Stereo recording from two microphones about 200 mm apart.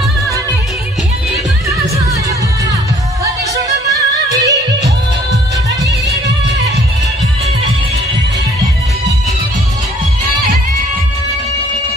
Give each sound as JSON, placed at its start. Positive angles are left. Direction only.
{"t": 4.3, "sound": "music", "side_deg": -15}